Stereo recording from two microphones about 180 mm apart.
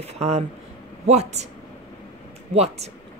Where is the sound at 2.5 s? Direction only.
35° right (ahead or behind).